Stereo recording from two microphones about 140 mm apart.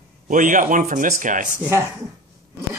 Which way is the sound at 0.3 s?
70° right (ahead or behind).